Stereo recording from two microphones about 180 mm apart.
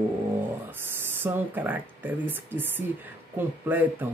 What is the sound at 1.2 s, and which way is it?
Speech, 10° right (ahead or behind).